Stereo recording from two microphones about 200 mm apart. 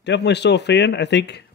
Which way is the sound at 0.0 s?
60° left (ahead or behind).